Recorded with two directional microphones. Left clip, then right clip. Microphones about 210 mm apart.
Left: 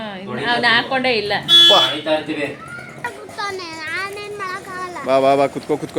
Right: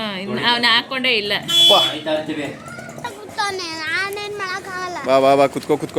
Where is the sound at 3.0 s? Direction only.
50° right (ahead or behind).